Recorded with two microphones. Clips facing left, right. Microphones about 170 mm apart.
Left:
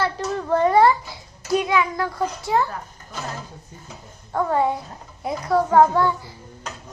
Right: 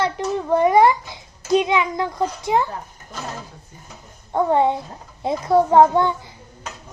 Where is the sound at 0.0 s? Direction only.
15° right (ahead or behind).